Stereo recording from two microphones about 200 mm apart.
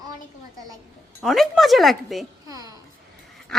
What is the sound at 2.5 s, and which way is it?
Speech, 15° right (ahead or behind).